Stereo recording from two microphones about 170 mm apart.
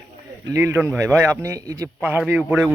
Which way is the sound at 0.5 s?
15° right (ahead or behind).